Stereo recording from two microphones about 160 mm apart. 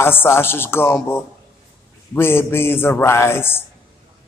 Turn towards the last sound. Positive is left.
turn(degrees=15)  # may be behind; listen again after turning